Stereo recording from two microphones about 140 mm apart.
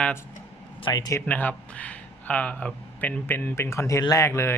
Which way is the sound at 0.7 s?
30° left (ahead or behind).